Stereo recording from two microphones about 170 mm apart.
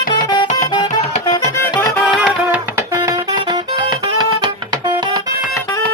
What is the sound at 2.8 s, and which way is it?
Music, 20° right (ahead or behind).